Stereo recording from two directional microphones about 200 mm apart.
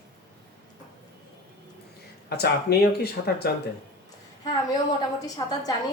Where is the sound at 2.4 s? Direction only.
55° left (ahead or behind).